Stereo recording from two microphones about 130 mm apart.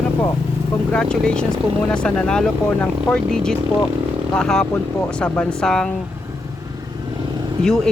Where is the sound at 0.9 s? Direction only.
5° left (ahead or behind).